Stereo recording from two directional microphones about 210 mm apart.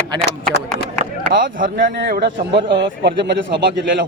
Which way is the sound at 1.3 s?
40° right (ahead or behind).